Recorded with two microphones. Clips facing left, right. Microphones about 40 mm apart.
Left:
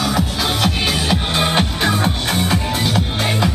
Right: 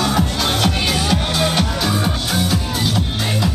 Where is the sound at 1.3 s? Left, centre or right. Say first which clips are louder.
Left 1 dB; left.